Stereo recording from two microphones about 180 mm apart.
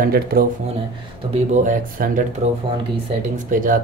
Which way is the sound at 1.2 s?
35° right (ahead or behind).